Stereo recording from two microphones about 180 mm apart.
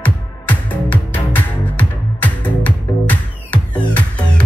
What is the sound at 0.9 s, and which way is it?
Music, 10° left (ahead or behind).